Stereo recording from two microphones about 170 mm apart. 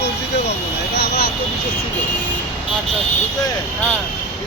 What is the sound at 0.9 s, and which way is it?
Speech, 70° left (ahead or behind).